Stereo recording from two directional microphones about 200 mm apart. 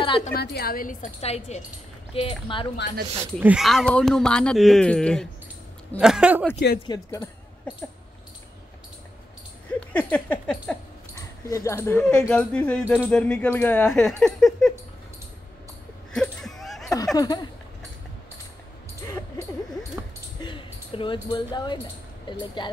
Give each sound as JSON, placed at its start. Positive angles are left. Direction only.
{"t": 0.0, "sound": "a woman's voice", "side_deg": 25}
{"t": 0.3, "sound": "a woman's voice", "side_deg": 55}
{"t": 3.3, "sound": "speech", "side_deg": -5}
{"t": 6.9, "sound": "speech", "side_deg": 20}
{"t": 9.7, "sound": "speech", "side_deg": 5}
{"t": 11.1, "sound": "speech", "side_deg": 15}
{"t": 16.1, "sound": "a sound", "side_deg": 5}
{"t": 16.9, "sound": "speech", "side_deg": 20}
{"t": 20.3, "sound": "a sound", "side_deg": 25}
{"t": 22.3, "sound": "speech", "side_deg": 20}